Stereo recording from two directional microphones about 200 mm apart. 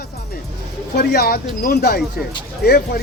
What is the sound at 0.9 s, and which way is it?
Speech, 50° left (ahead or behind).